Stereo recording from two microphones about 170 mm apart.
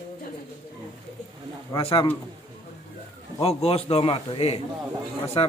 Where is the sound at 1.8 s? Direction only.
35° left (ahead or behind).